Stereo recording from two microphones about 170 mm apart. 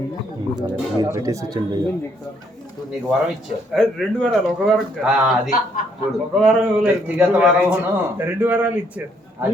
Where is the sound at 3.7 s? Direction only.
Centre (ahead or behind).